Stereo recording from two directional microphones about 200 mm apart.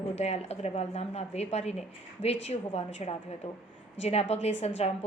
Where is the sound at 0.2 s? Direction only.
30° left (ahead or behind).